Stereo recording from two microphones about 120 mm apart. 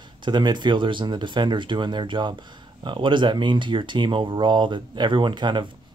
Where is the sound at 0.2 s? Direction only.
40° right (ahead or behind).